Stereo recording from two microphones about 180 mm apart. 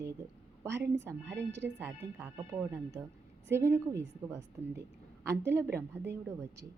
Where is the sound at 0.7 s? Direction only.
70° right (ahead or behind).